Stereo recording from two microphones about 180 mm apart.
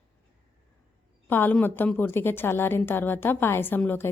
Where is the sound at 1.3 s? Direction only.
10° left (ahead or behind).